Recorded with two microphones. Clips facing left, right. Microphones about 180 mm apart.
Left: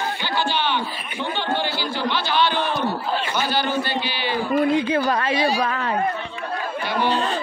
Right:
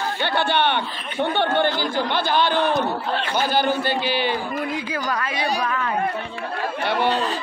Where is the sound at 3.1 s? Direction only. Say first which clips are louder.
Even; 5° left (ahead or behind).